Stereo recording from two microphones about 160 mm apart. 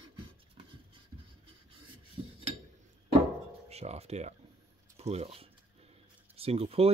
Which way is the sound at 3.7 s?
40° right (ahead or behind).